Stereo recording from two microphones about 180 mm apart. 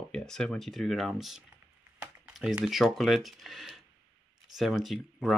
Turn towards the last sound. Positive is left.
turn(degrees=0)  # may be behind; listen again after turning